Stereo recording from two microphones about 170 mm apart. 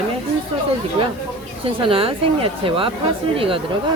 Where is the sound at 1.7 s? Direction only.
30° right (ahead or behind).